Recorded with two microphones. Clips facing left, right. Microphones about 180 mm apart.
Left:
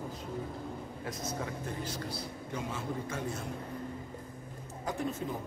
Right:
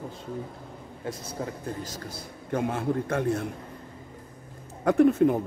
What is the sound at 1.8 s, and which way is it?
Speech, 45° right (ahead or behind).